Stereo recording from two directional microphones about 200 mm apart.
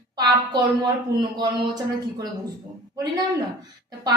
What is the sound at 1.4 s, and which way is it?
Speech, 20° right (ahead or behind).